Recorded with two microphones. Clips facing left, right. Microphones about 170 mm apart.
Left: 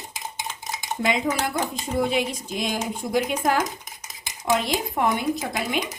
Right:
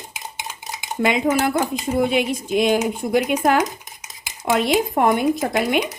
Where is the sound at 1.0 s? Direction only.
60° right (ahead or behind).